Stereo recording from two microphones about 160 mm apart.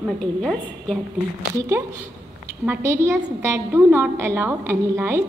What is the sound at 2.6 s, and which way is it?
A woman's voice, 15° right (ahead or behind).